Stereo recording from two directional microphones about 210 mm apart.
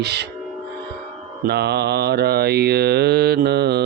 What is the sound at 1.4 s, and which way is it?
Mantra, 50° right (ahead or behind).